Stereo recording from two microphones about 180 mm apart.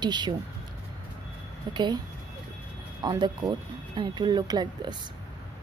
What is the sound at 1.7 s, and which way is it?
Speech, 25° right (ahead or behind).